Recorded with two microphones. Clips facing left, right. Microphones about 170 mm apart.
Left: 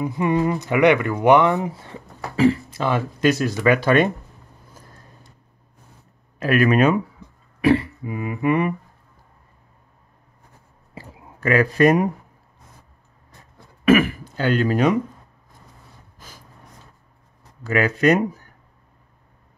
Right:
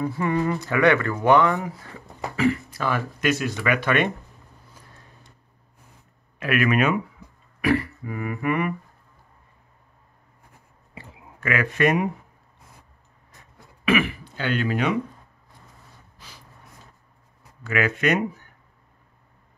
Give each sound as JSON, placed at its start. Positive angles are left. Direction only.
{"t": 0.0, "sound": "speech", "side_deg": 20}
{"t": 4.7, "sound": "vehicle", "side_deg": 40}
{"t": 6.4, "sound": "speech", "side_deg": 35}
{"t": 11.0, "sound": "a sound", "side_deg": 35}
{"t": 13.3, "sound": "throat clearing", "side_deg": 40}
{"t": 16.2, "sound": "snort", "side_deg": 45}
{"t": 17.6, "sound": "speech", "side_deg": 35}